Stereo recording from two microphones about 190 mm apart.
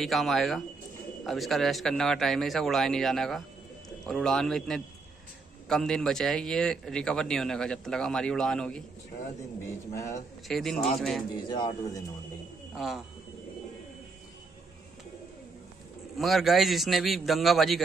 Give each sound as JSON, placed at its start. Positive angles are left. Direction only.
{"t": 0.0, "sound": "speech", "side_deg": 0}
{"t": 10.5, "sound": "speech", "side_deg": 0}
{"t": 11.3, "sound": "speech", "side_deg": 25}
{"t": 12.7, "sound": "speech", "side_deg": 0}
{"t": 16.2, "sound": "speech", "side_deg": 0}